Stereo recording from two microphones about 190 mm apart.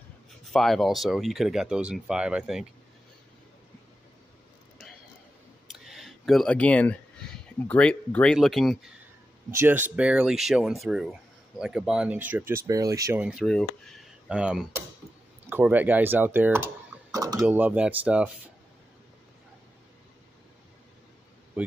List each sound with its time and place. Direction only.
0.5 s speech: centre (ahead or behind)
5.7 s a sound: centre (ahead or behind)
7.6 s speech: 5° left (ahead or behind)
9.5 s speech: 10° right (ahead or behind)
13.2 s speech: 5° right (ahead or behind)
17.5 s speech: 10° right (ahead or behind)
21.6 s a sound: 5° right (ahead or behind)